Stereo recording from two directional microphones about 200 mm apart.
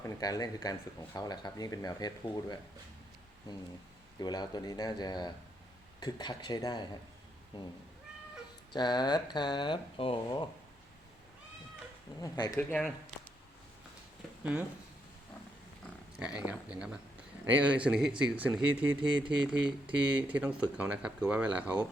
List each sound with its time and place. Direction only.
0.0 s speech: 20° left (ahead or behind)
4.2 s speech: 20° left (ahead or behind)
8.7 s speech: 20° left (ahead or behind)
12.2 s speech: 15° left (ahead or behind)
16.1 s speech: 5° right (ahead or behind)